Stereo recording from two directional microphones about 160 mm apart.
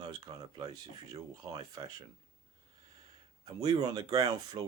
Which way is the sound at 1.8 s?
30° right (ahead or behind).